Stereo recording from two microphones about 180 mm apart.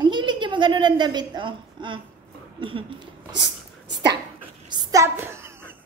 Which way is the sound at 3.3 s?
75° right (ahead or behind).